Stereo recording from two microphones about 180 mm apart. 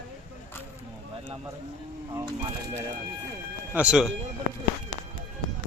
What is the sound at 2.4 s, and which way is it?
Music, 35° right (ahead or behind).